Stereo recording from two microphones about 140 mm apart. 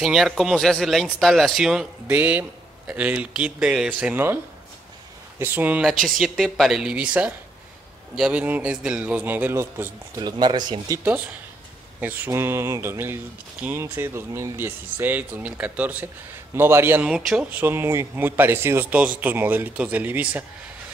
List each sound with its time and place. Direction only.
0.0 s speech: 5° right (ahead or behind)
5.4 s speech: 15° right (ahead or behind)
6.0 s speech: centre (ahead or behind); by 10.2 s 20° right (ahead or behind)
10.2 s speech: 30° right (ahead or behind)
12.0 s speech: 15° right (ahead or behind)